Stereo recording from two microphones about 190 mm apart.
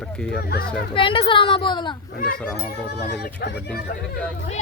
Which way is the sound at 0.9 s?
25° left (ahead or behind).